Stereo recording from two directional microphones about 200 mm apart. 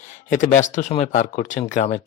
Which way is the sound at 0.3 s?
40° left (ahead or behind).